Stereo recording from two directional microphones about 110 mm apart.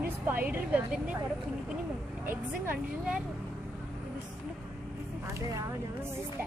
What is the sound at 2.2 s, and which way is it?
Speech, 20° right (ahead or behind).